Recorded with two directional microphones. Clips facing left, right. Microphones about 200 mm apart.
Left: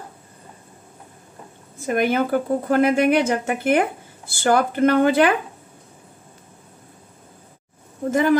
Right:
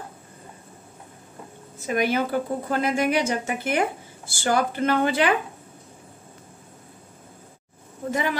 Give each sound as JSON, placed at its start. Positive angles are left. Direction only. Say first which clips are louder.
{"t": 1.8, "sound": "a woman's voice", "louder": "left 3 dB", "side_deg": 50}
{"t": 8.1, "sound": "speech", "louder": "left 9 dB", "side_deg": 45}